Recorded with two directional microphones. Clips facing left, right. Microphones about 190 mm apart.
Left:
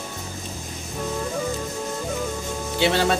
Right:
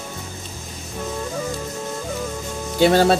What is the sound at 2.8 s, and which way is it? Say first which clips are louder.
Speech: right 6 dB; 40° right (ahead or behind).